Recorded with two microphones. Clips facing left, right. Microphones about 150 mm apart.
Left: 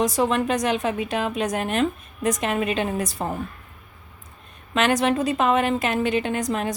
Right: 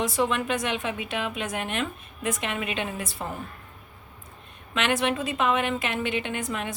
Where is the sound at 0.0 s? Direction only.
40° left (ahead or behind).